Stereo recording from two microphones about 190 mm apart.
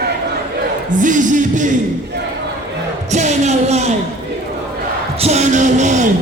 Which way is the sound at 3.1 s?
35° right (ahead or behind).